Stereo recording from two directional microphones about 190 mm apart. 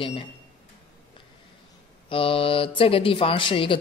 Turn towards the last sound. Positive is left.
turn(degrees=25)  # may be behind; listen again after turning